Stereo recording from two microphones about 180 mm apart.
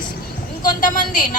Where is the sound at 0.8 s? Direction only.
50° left (ahead or behind).